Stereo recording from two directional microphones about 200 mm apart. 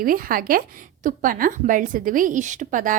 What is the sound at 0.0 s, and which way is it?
Speech, 45° right (ahead or behind).